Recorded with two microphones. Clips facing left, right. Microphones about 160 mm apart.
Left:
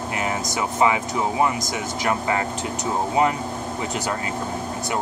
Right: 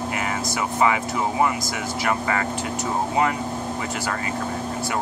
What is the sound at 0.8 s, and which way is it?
Speech, 20° left (ahead or behind).